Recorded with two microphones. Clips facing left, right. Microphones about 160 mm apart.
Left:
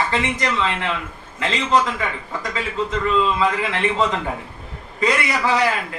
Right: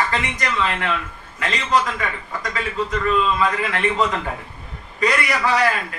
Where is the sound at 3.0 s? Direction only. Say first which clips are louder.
Left 1 dB; 20° left (ahead or behind).